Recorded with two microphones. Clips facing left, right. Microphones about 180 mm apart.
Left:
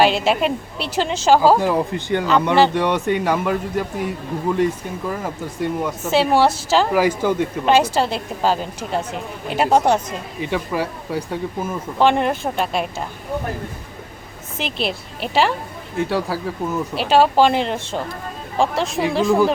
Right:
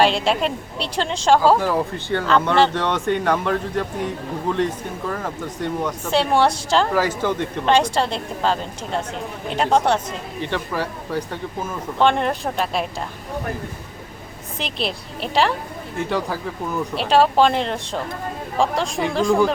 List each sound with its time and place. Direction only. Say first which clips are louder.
0.0 s a woman's voice: left 2 dB; 5° left (ahead or behind)
1.5 s a man's voice: left 2 dB; 15° left (ahead or behind); by 12.9 s centre (ahead or behind)
14.6 s a woman's voice: left 2 dB; centre (ahead or behind)